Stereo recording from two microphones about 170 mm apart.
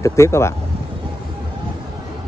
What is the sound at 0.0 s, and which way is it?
Speech, 15° left (ahead or behind).